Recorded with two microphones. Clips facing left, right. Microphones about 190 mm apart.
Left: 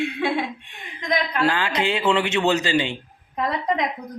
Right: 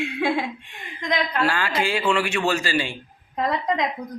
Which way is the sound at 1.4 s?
20° left (ahead or behind).